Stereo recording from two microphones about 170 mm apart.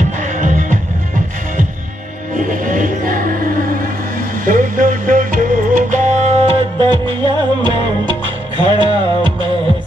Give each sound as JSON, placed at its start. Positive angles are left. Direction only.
{"t": 0.4, "sound": "music", "side_deg": -50}
{"t": 2.5, "sound": "music", "side_deg": -50}
{"t": 4.5, "sound": "music", "side_deg": -50}